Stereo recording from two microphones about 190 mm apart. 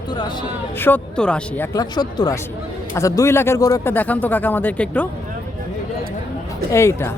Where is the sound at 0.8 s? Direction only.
10° left (ahead or behind).